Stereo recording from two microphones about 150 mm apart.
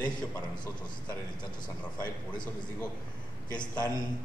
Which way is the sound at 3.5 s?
30° left (ahead or behind).